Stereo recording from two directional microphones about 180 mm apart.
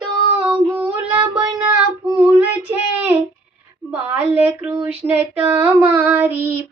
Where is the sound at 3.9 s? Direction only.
10° right (ahead or behind).